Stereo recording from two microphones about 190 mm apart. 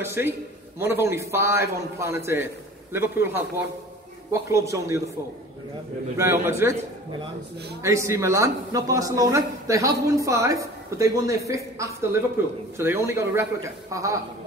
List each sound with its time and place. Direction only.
0.0 s speech: 10° right (ahead or behind)
6.1 s speech: 15° right (ahead or behind)
7.8 s speech: 15° right (ahead or behind)